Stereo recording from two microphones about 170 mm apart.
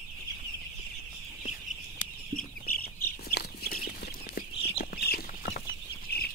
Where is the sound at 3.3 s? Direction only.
65° left (ahead or behind).